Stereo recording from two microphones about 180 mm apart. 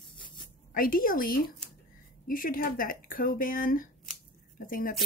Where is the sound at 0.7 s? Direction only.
50° left (ahead or behind).